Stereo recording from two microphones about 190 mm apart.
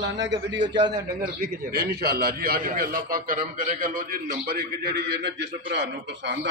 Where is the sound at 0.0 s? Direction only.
70° right (ahead or behind).